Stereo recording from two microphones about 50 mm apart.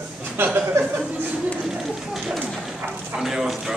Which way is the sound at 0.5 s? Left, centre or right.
Right.